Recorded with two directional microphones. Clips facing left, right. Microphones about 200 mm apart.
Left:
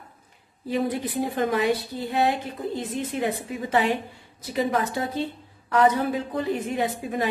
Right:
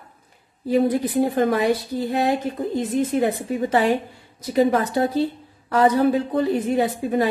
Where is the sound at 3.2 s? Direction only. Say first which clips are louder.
Right 6 dB; 40° right (ahead or behind).